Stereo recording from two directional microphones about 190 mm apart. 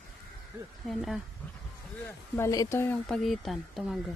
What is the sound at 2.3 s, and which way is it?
Speech, 15° left (ahead or behind).